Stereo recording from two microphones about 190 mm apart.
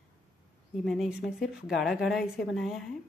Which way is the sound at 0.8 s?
Centre (ahead or behind).